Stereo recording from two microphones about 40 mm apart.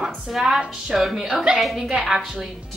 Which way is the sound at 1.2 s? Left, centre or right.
Right.